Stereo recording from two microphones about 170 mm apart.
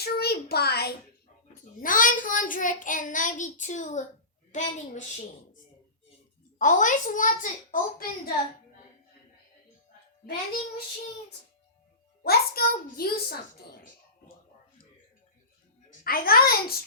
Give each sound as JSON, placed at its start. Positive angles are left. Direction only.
{"t": 0.0, "sound": "a sound", "side_deg": 70}
{"t": 1.8, "sound": "child singing", "side_deg": 55}
{"t": 6.6, "sound": "child singing", "side_deg": 50}
{"t": 12.2, "sound": "a child's voice", "side_deg": 65}
{"t": 16.0, "sound": "a child's voice", "side_deg": 60}